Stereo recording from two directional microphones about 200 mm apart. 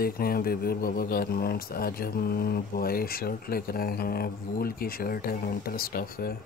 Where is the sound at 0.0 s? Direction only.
50° left (ahead or behind).